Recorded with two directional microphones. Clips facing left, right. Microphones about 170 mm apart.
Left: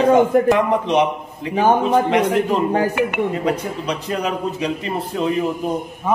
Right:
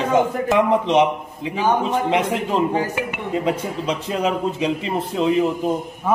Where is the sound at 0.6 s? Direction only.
20° right (ahead or behind).